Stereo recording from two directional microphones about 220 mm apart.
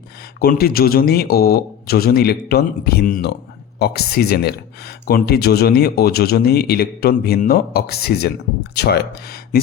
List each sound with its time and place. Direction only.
0.3 s speech: 45° left (ahead or behind)